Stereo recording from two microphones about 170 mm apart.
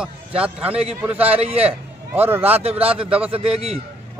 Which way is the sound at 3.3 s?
35° right (ahead or behind).